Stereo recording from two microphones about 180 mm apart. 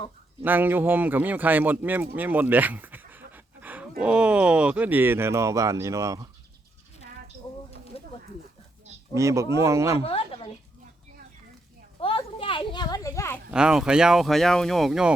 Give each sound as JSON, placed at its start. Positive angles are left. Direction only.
{"t": 0.4, "sound": "speech", "side_deg": -10}
{"t": 3.1, "sound": "a sound", "side_deg": -10}
{"t": 4.0, "sound": "speech", "side_deg": -5}
{"t": 7.9, "sound": "a sound", "side_deg": 35}
{"t": 9.1, "sound": "speech", "side_deg": -15}
{"t": 10.0, "sound": "a woman's voice", "side_deg": 30}
{"t": 11.9, "sound": "children playing", "side_deg": 30}
{"t": 13.5, "sound": "speech", "side_deg": -5}